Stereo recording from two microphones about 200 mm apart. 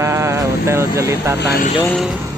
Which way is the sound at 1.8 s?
Centre (ahead or behind).